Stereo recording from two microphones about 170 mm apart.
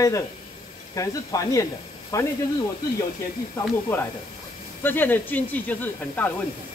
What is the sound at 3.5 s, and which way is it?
Speech, 15° left (ahead or behind).